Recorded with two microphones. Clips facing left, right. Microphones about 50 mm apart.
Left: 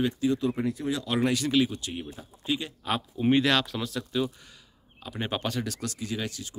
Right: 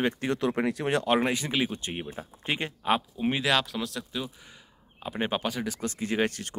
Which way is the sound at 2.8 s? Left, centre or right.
Centre.